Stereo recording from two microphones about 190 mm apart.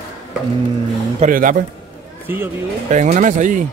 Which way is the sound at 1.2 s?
45° right (ahead or behind).